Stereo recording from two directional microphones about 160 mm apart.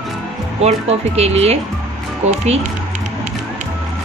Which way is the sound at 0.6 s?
40° right (ahead or behind).